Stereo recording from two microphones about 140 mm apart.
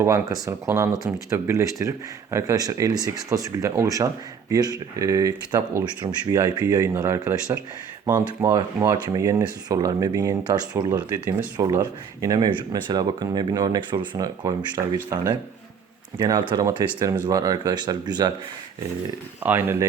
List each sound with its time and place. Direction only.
0.0 s speech: 25° right (ahead or behind)
10.9 s speech: 15° right (ahead or behind)
19.4 s speech: 15° right (ahead or behind)